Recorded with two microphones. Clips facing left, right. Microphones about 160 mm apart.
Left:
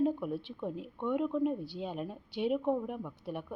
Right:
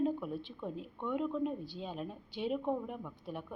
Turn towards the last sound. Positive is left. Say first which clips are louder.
# left 3 dB
turn(degrees=15)  # may be behind; listen again after turning